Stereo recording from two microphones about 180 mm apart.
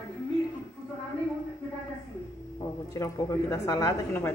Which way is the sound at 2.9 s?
20° left (ahead or behind).